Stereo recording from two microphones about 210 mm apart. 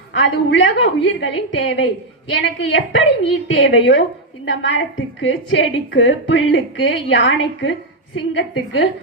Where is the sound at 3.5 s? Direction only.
60° left (ahead or behind).